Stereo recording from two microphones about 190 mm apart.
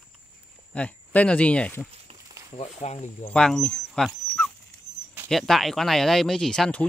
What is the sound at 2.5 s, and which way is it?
Speech, 35° left (ahead or behind).